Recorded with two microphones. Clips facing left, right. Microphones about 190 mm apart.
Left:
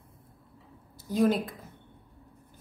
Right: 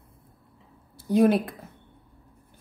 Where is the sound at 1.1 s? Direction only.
60° right (ahead or behind).